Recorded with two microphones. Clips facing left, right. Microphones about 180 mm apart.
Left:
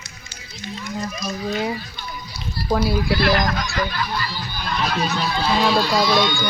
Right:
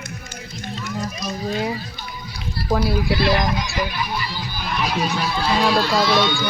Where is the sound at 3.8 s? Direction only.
10° right (ahead or behind).